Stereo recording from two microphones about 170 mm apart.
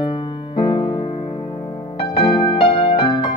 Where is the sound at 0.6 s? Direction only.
30° left (ahead or behind).